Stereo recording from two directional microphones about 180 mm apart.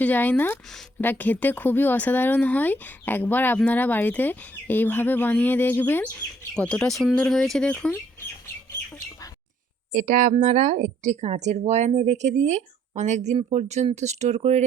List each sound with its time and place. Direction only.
0.0 s a woman's voice: 10° left (ahead or behind)
9.9 s speech: 45° right (ahead or behind)